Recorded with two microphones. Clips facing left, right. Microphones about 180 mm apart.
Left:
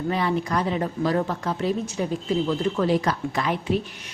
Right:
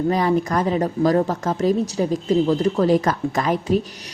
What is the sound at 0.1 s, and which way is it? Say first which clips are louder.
A woman's voice: right 2 dB; 40° right (ahead or behind).